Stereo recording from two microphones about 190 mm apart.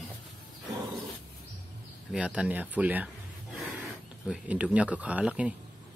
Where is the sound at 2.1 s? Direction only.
5° right (ahead or behind).